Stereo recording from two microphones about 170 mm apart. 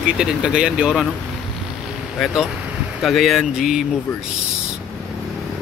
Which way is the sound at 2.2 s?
Centre (ahead or behind).